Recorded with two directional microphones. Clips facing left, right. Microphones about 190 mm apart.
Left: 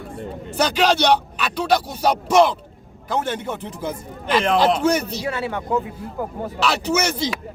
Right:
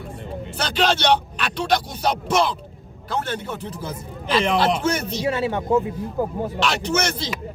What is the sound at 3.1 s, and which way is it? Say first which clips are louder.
Speech: left 3 dB; 15° left (ahead or behind).